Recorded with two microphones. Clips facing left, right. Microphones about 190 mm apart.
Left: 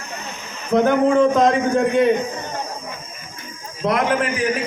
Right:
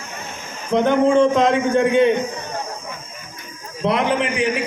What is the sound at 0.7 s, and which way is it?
A man's voice, 5° left (ahead or behind).